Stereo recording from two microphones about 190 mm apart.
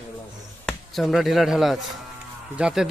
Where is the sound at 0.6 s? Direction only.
Centre (ahead or behind).